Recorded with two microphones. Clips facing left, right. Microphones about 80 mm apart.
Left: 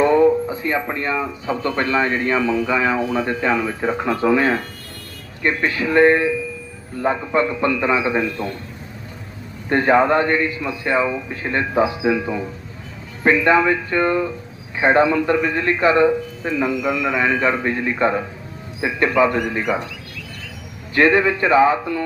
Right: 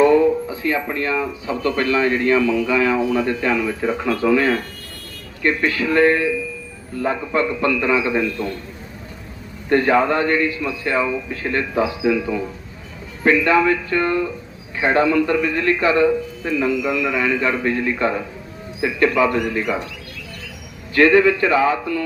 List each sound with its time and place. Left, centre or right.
0.0 s speech: left
9.6 s speech: left
20.9 s speech: left